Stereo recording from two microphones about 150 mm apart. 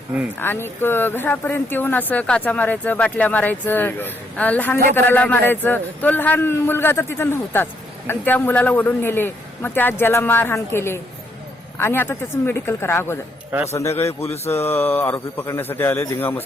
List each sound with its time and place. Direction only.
0.3 s a man's voice: 15° left (ahead or behind)